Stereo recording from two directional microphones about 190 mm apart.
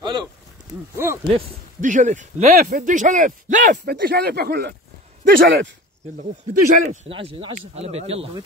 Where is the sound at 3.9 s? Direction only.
60° right (ahead or behind).